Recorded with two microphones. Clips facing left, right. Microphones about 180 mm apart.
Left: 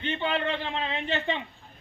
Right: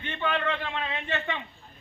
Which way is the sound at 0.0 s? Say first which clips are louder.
Left 1 dB; 30° left (ahead or behind).